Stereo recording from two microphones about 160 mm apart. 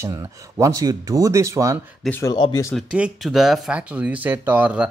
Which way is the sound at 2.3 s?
25° left (ahead or behind).